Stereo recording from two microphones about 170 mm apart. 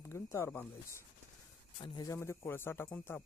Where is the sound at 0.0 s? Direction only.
15° left (ahead or behind).